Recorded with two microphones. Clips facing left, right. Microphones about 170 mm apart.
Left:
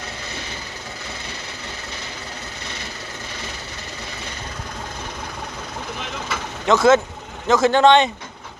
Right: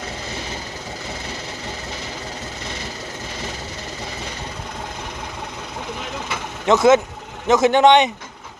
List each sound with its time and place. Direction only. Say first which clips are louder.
6.7 s speech: right 1 dB; 20° right (ahead or behind)